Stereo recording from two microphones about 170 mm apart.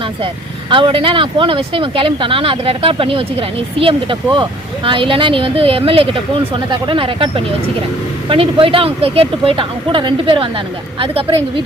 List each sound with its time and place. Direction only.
0.7 s speech: 30° right (ahead or behind)